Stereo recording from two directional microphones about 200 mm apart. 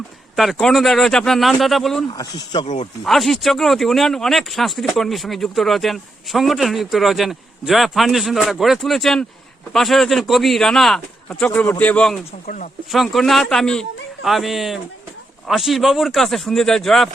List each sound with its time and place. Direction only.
0.3 s speech: centre (ahead or behind)
2.0 s speech: 20° left (ahead or behind)
3.0 s speech: centre (ahead or behind)